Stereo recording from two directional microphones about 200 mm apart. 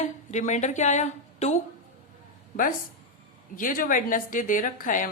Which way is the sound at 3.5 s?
45° left (ahead or behind).